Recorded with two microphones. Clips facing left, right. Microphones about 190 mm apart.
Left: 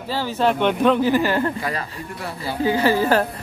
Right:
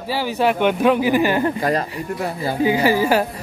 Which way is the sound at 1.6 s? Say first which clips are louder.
Right 7 dB; 40° right (ahead or behind).